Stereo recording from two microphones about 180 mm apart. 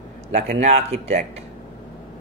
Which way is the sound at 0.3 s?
35° right (ahead or behind).